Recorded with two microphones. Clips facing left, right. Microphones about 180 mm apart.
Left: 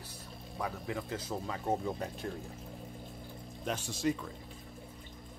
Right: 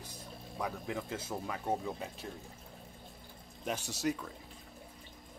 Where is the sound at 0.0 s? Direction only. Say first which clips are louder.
Even; 15° right (ahead or behind).